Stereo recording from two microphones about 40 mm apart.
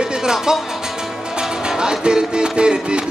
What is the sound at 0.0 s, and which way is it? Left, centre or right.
Music, centre.